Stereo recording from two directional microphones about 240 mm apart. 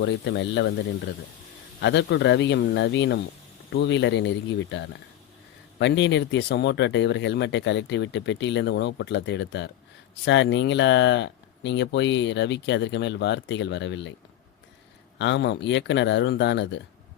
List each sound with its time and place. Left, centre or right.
0.0 s speech: left
1.8 s speech: left
15.2 s speech: left